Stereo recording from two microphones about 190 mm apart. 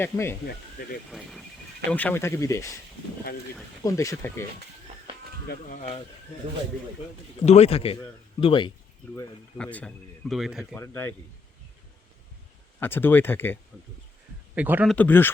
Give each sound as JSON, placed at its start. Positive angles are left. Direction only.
{"t": 0.0, "sound": "speech", "side_deg": 15}
{"t": 0.8, "sound": "speech", "side_deg": 50}
{"t": 1.9, "sound": "speech", "side_deg": 10}
{"t": 5.7, "sound": "a man's voice", "side_deg": 40}
{"t": 7.4, "sound": "a man's voice", "side_deg": 35}
{"t": 9.1, "sound": "speech", "side_deg": 10}
{"t": 10.8, "sound": "speech", "side_deg": 15}
{"t": 12.8, "sound": "speech", "side_deg": 10}
{"t": 14.5, "sound": "a man's voice", "side_deg": -10}
{"t": 14.9, "sound": "speech", "side_deg": 10}